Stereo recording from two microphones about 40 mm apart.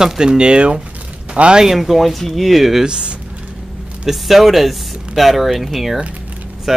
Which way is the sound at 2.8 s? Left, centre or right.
Right.